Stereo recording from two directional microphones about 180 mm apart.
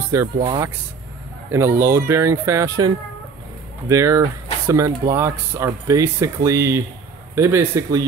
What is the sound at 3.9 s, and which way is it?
Speech, 15° right (ahead or behind).